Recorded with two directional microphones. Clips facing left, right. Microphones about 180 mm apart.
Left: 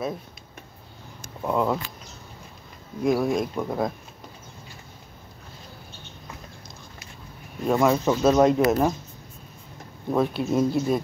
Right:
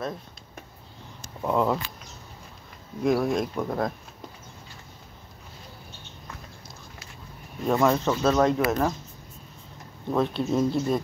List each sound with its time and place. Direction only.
1.4 s speech: centre (ahead or behind)
3.0 s speech: centre (ahead or behind)
7.6 s speech: 5° left (ahead or behind)
10.1 s speech: 10° left (ahead or behind)